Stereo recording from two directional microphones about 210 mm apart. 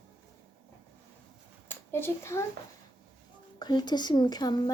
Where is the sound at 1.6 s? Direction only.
10° left (ahead or behind).